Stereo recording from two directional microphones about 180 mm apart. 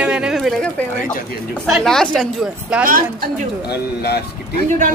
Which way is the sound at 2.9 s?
50° right (ahead or behind).